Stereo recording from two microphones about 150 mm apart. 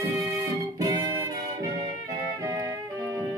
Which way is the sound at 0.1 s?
20° right (ahead or behind).